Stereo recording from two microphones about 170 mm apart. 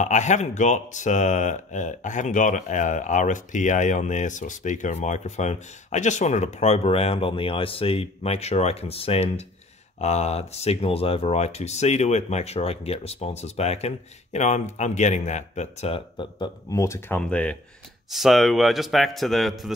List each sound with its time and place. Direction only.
0.0 s a man's voice: 45° left (ahead or behind); by 19.7 s centre (ahead or behind)